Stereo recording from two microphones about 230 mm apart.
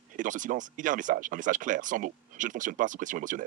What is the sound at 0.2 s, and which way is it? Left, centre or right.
Speech, right.